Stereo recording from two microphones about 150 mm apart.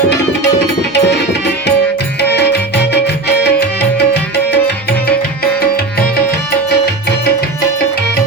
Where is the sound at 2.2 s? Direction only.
90° left.